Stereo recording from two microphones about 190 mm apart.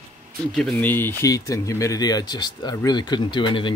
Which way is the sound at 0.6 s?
5° left (ahead or behind).